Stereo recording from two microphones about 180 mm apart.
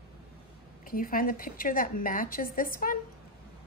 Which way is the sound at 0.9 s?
50° left (ahead or behind).